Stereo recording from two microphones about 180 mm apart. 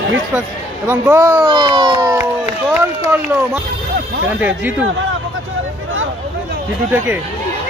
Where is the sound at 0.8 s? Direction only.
15° right (ahead or behind).